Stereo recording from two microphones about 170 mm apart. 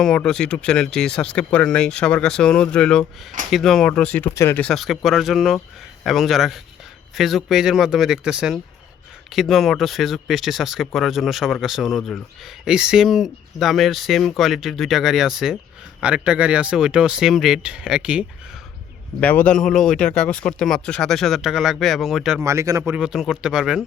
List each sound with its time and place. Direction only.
0.0 s speech: 5° left (ahead or behind)
19.2 s speech: 10° left (ahead or behind)
22.4 s speech: 15° right (ahead or behind)
22.9 s speech: 5° right (ahead or behind)